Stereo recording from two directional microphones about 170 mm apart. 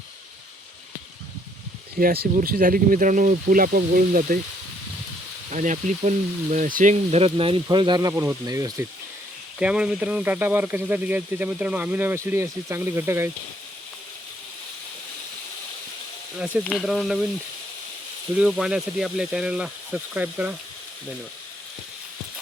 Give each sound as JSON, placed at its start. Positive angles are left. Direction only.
{"t": 2.0, "sound": "speech", "side_deg": -60}
{"t": 5.5, "sound": "speech", "side_deg": -45}
{"t": 6.9, "sound": "speech", "side_deg": -35}
{"t": 8.1, "sound": "speech", "side_deg": -10}
{"t": 9.6, "sound": "speech", "side_deg": -5}
{"t": 16.6, "sound": "speech", "side_deg": 0}
{"t": 18.3, "sound": "speech", "side_deg": 0}